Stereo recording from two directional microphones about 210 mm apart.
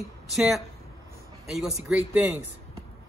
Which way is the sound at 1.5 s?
5° right (ahead or behind).